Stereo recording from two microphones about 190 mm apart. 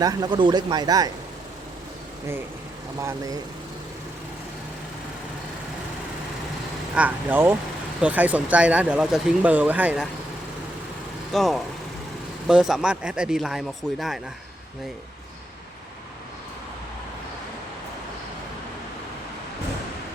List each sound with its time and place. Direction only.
0.0 s a man's voice: 20° right (ahead or behind)
3.0 s speech: 15° right (ahead or behind)
6.9 s speech: 10° right (ahead or behind)
11.3 s speech: centre (ahead or behind)